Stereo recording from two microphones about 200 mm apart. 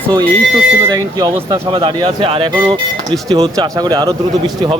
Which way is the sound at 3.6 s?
20° right (ahead or behind).